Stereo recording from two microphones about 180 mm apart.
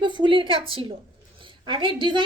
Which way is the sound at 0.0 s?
25° right (ahead or behind).